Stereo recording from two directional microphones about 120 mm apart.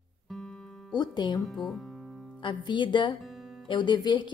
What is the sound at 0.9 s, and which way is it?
Speech, 35° left (ahead or behind).